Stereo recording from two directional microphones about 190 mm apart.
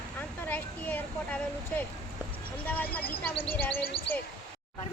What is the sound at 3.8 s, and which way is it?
Speech, 50° left (ahead or behind).